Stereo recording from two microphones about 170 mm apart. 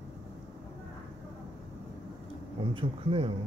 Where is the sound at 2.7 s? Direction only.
30° right (ahead or behind).